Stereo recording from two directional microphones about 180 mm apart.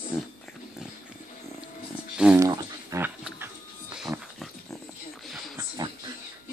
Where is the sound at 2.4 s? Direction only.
15° right (ahead or behind).